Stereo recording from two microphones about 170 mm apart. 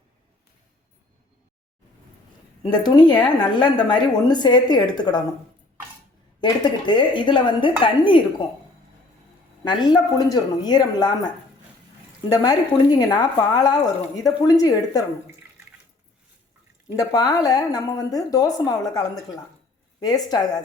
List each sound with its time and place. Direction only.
2.8 s a woman's voice: 25° left (ahead or behind)
6.4 s a woman's voice: 30° left (ahead or behind)
9.6 s a woman's voice: 25° left (ahead or behind)
12.3 s a woman's voice: 25° left (ahead or behind)
16.9 s a woman's voice: 20° left (ahead or behind)